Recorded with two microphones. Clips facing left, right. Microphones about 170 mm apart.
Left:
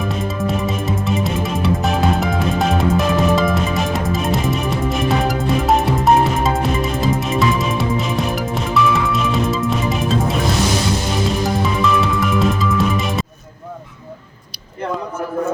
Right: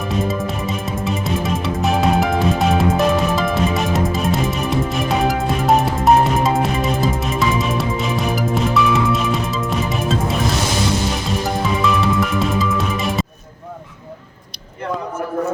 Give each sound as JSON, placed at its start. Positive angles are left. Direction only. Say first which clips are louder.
{"t": 0.3, "sound": "music", "louder": "left 1 dB", "side_deg": 0}
{"t": 11.6, "sound": "music", "louder": "even", "side_deg": 0}